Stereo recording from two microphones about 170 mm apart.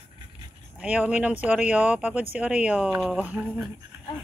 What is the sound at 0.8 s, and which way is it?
Speech, 5° right (ahead or behind).